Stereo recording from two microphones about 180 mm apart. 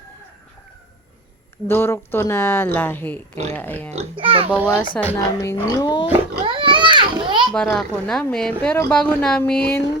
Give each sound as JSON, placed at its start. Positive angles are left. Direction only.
{"t": 1.6, "sound": "speech", "side_deg": 15}
{"t": 4.2, "sound": "a child's voice", "side_deg": -30}
{"t": 4.5, "sound": "speech", "side_deg": 10}
{"t": 6.4, "sound": "children playing", "side_deg": -30}
{"t": 7.5, "sound": "speech", "side_deg": 5}